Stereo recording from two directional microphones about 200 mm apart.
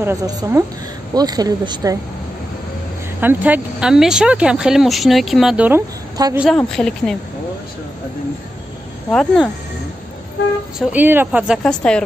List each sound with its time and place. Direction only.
0.0 s a woman's voice: 15° right (ahead or behind)
3.2 s speech: 10° right (ahead or behind)
6.5 s speech: 5° left (ahead or behind)
9.1 s speech: centre (ahead or behind)
10.8 s speech: 10° right (ahead or behind)